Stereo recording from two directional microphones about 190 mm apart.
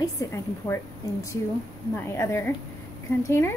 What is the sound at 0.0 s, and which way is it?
A woman's voice, 15° left (ahead or behind).